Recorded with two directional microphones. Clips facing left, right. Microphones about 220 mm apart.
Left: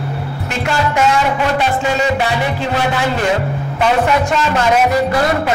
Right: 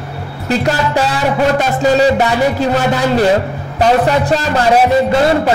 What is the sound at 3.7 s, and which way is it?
A man's voice, 35° right (ahead or behind).